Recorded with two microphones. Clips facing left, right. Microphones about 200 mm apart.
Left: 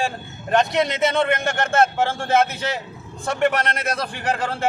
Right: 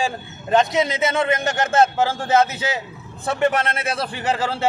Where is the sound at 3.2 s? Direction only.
Centre (ahead or behind).